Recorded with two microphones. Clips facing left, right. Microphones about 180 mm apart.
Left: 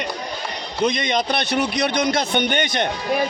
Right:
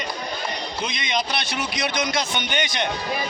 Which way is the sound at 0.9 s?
50° left (ahead or behind).